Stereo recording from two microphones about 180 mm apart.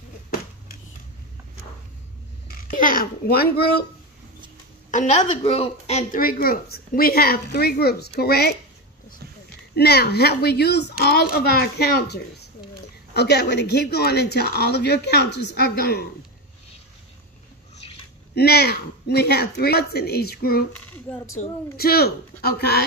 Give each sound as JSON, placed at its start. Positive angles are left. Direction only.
{"t": 2.4, "sound": "a child's voice", "side_deg": 55}
{"t": 4.9, "sound": "a woman's voice", "side_deg": 40}
{"t": 6.2, "sound": "speech", "side_deg": 55}
{"t": 9.8, "sound": "speech", "side_deg": 60}
{"t": 18.3, "sound": "speech", "side_deg": 60}